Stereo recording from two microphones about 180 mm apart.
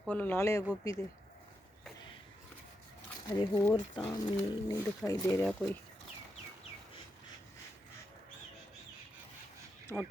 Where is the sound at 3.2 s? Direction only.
25° left (ahead or behind).